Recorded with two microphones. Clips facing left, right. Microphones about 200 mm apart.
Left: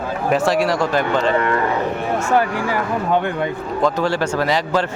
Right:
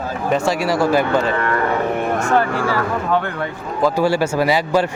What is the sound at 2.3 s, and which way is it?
Speech, 15° left (ahead or behind).